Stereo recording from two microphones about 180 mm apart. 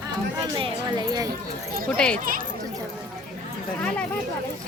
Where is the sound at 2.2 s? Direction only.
50° right (ahead or behind).